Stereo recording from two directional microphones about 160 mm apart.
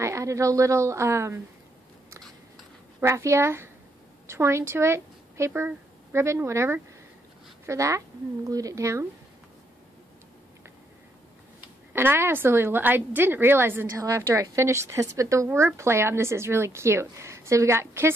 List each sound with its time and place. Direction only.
0.0 s a woman's voice: 20° right (ahead or behind)
3.0 s speech: 20° right (ahead or behind)
11.9 s a woman's voice: 15° right (ahead or behind)